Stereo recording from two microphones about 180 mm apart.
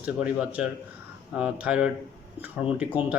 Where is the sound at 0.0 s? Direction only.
5° right (ahead or behind).